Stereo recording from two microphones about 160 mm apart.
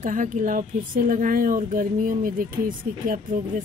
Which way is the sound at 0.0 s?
55° right (ahead or behind).